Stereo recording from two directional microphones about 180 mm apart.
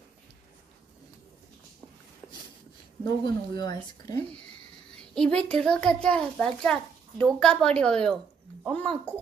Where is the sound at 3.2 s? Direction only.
25° left (ahead or behind).